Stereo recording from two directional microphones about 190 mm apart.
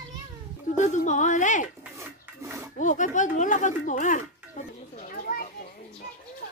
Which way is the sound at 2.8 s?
40° left (ahead or behind).